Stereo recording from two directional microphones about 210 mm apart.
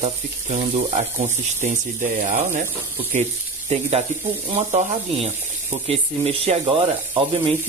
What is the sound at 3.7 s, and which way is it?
Speech, 30° right (ahead or behind).